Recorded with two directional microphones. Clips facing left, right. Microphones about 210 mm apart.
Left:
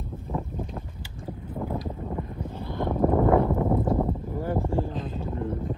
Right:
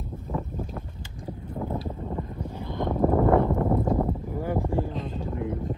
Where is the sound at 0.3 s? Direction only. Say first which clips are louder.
Even; 15° left (ahead or behind).